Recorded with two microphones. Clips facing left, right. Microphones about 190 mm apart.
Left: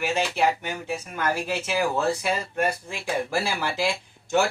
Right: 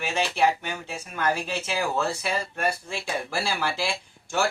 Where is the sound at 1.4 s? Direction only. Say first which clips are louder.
Left 3 dB; 15° left (ahead or behind).